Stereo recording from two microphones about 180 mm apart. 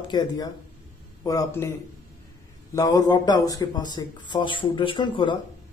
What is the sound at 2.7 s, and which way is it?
A man's voice, 20° left (ahead or behind).